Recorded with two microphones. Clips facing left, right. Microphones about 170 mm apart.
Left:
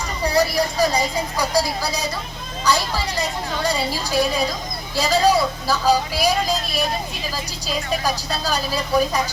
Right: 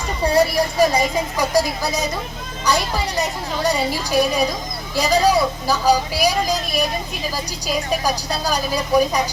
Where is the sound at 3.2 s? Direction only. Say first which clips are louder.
Right 2 dB; 20° right (ahead or behind).